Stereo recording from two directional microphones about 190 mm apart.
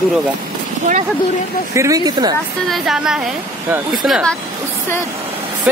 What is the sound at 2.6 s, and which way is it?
Speech, 5° right (ahead or behind).